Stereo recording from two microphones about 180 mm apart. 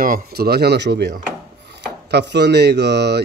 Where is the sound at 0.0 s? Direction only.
55° right (ahead or behind).